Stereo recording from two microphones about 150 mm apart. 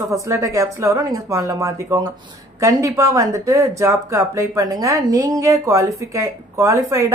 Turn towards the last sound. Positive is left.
turn(degrees=-20)  # may be behind; listen again after turning